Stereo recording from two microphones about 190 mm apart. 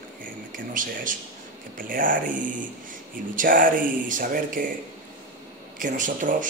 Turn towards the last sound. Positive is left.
turn(degrees=-45)  # may be behind; listen again after turning